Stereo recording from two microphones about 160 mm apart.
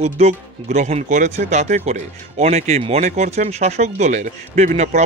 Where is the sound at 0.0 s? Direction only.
45° right (ahead or behind).